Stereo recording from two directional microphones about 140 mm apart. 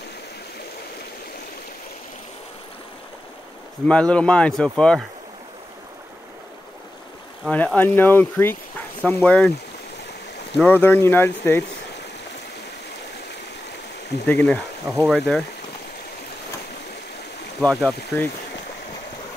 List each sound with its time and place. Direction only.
3.8 s speech: 5° left (ahead or behind)
7.5 s speech: 10° left (ahead or behind)
10.6 s speech: 15° left (ahead or behind)
14.2 s speech: 10° left (ahead or behind)
17.6 s speech: 5° left (ahead or behind)